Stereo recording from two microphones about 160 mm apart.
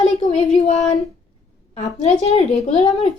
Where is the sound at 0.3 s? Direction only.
45° left (ahead or behind).